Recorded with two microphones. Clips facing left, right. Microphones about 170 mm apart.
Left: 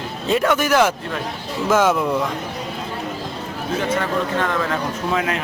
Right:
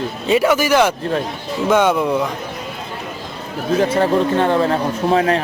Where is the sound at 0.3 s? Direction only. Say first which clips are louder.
Right 3 dB; centre (ahead or behind).